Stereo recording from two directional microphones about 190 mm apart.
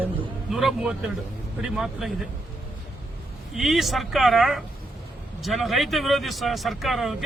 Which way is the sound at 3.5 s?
Centre (ahead or behind).